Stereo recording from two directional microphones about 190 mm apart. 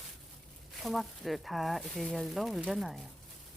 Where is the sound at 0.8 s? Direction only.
Centre (ahead or behind).